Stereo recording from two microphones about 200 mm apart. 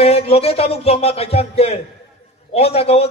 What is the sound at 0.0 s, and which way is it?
A man's voice, 30° left (ahead or behind).